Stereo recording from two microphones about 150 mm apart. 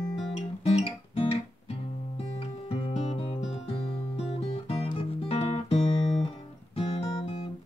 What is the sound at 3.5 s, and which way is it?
Music, 40° left (ahead or behind).